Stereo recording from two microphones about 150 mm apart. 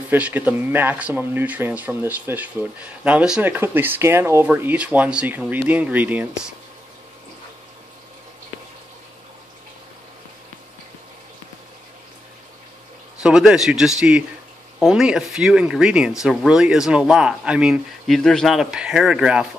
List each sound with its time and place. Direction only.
0.1 s speech: 10° right (ahead or behind)
13.2 s speech: 5° right (ahead or behind)